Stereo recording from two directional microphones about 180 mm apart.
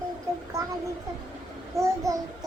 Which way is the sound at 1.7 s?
20° right (ahead or behind).